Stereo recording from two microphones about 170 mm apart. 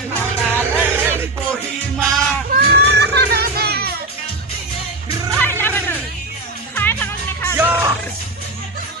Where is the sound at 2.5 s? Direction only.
65° right (ahead or behind).